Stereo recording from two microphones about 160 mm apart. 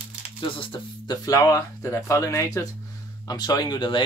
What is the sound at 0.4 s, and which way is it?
Speech, 30° left (ahead or behind).